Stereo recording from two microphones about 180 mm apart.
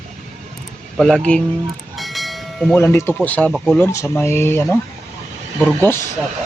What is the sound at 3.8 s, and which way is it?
Speech, 15° left (ahead or behind).